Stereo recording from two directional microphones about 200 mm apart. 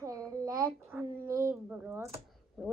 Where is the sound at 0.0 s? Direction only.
15° right (ahead or behind).